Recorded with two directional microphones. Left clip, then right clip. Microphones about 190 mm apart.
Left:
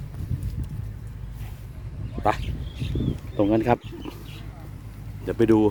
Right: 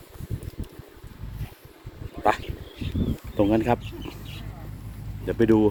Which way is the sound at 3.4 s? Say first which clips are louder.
Even; 20° left (ahead or behind).